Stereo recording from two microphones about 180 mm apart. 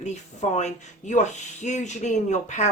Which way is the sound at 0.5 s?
40° left (ahead or behind).